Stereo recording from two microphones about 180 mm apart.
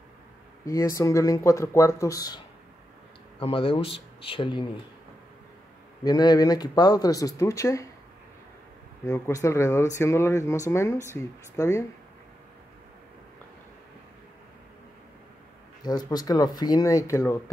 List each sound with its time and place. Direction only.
0.9 s speech: 15° left (ahead or behind)
3.3 s speech: 30° left (ahead or behind)
6.0 s speech: 20° left (ahead or behind)
9.0 s speech: 15° left (ahead or behind)
15.8 s speech: 20° left (ahead or behind)